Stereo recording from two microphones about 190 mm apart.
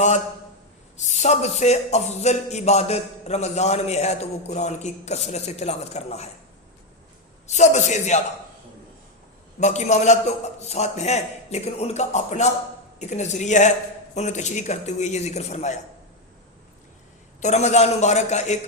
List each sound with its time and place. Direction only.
1.0 s a man's voice: 35° left (ahead or behind)
7.4 s a man's voice: 35° left (ahead or behind)
9.6 s a man's voice: 35° left (ahead or behind)
17.4 s a man's voice: 35° left (ahead or behind)